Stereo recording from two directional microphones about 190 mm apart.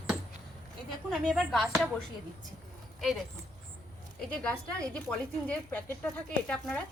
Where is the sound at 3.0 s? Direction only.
Centre (ahead or behind).